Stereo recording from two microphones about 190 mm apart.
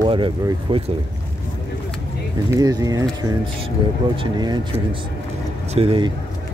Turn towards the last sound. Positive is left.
turn(degrees=-25)  # may be behind; listen again after turning